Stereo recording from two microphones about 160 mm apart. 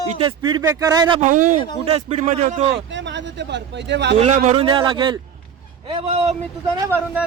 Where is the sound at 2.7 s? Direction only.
90° right.